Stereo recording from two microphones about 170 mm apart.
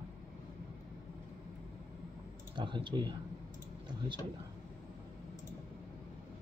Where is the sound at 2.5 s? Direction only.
30° right (ahead or behind).